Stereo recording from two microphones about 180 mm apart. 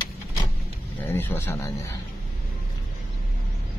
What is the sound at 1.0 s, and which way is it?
Speech, 10° left (ahead or behind).